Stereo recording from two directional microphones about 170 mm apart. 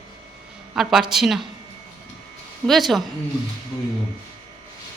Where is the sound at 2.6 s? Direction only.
Centre (ahead or behind).